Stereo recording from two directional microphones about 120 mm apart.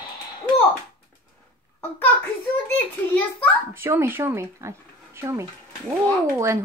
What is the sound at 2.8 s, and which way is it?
Speech, 15° left (ahead or behind).